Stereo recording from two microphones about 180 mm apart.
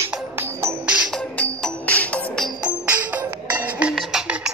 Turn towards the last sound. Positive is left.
turn(degrees=-5)  # may be behind; listen again after turning